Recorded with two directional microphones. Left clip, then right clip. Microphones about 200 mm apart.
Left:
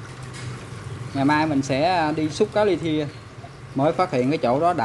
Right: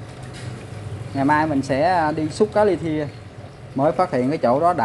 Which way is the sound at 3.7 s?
10° left (ahead or behind).